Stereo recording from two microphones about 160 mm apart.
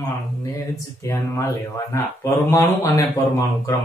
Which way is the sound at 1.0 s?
20° left (ahead or behind).